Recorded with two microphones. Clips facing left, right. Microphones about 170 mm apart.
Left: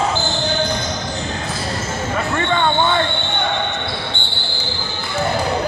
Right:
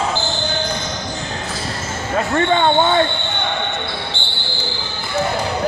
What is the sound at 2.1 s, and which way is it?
Speech, 35° right (ahead or behind).